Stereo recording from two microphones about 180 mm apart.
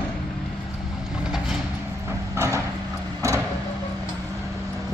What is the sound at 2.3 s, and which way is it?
Vehicle, 15° right (ahead or behind).